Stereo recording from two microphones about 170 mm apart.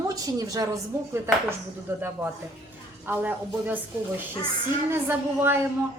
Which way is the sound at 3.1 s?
10° right (ahead or behind).